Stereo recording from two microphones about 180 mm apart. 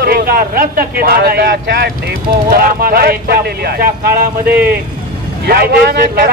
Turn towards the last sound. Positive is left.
turn(degrees=-55)  # may be behind; listen again after turning